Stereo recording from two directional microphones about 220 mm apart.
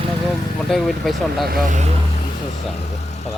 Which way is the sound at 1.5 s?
35° right (ahead or behind).